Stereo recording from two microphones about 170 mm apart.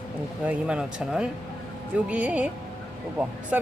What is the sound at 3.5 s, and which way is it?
Speech, 5° right (ahead or behind).